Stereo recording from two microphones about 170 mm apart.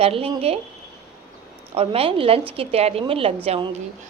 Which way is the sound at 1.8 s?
35° right (ahead or behind).